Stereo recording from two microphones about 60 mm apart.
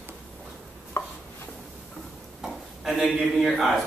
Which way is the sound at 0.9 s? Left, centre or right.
Left.